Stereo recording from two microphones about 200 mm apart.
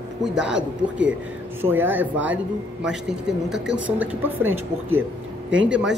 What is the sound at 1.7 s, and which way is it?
A woman's voice, 10° right (ahead or behind).